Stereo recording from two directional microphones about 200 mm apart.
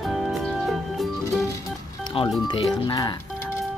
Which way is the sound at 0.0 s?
Centre (ahead or behind).